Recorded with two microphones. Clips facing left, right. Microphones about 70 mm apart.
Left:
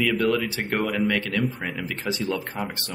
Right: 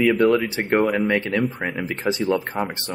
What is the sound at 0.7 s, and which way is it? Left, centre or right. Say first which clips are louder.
Speech: right 8 dB; centre.